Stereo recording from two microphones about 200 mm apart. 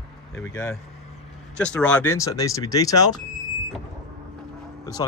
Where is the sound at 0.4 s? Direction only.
15° left (ahead or behind).